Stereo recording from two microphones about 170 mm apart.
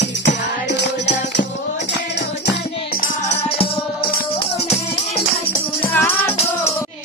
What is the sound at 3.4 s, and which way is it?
Music, 35° left (ahead or behind).